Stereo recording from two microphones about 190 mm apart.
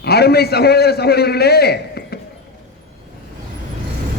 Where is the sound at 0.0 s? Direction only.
55° left (ahead or behind).